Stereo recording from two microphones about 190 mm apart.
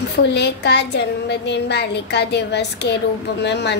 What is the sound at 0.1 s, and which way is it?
A woman's voice, 60° left (ahead or behind).